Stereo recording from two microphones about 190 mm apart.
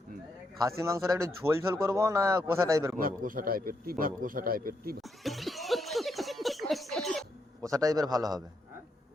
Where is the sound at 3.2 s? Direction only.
50° right (ahead or behind).